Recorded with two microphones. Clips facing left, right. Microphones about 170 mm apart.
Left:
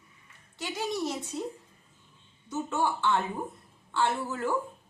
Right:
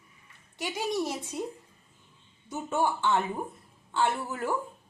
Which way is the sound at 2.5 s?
15° right (ahead or behind).